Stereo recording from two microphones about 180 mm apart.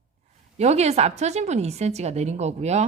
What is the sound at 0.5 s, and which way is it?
A woman's voice, 40° right (ahead or behind).